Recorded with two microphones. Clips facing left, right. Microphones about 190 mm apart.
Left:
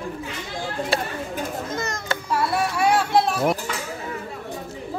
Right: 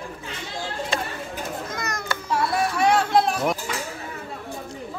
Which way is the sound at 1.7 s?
25° left (ahead or behind).